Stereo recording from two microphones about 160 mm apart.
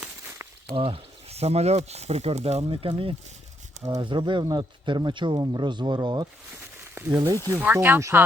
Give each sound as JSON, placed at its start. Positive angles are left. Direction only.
{"t": 0.0, "sound": "snake", "side_deg": -10}
{"t": 0.8, "sound": "speech", "side_deg": -35}
{"t": 6.9, "sound": "speech", "side_deg": -10}